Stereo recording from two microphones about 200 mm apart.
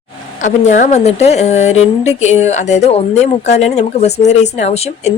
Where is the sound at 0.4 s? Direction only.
40° left (ahead or behind).